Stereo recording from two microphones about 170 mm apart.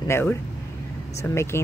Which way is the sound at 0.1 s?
10° left (ahead or behind).